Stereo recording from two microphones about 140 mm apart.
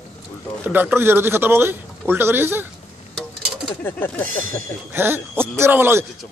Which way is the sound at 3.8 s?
15° left (ahead or behind).